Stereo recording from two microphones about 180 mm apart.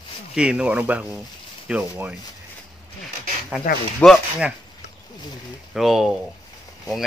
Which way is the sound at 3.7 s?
45° left (ahead or behind).